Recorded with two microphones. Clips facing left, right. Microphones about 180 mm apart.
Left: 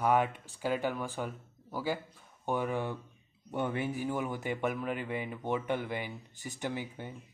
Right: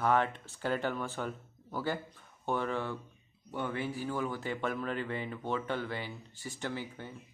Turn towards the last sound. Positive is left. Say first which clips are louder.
# left 2 dB
turn(degrees=15)  # may be behind; listen again after turning